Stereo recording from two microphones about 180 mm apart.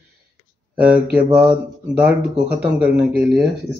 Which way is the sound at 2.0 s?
10° right (ahead or behind).